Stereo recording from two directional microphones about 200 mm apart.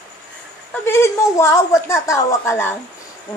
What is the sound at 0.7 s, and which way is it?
A woman's voice, 15° left (ahead or behind).